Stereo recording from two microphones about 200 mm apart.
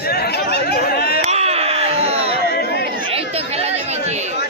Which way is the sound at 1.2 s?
30° right (ahead or behind).